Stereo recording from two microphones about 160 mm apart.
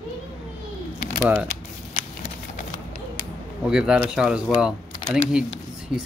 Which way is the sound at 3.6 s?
5° right (ahead or behind).